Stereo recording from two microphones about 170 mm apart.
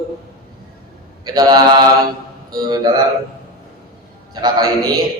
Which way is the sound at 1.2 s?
25° right (ahead or behind).